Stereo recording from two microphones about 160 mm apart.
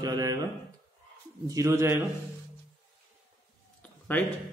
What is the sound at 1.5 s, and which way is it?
Speech, 20° right (ahead or behind).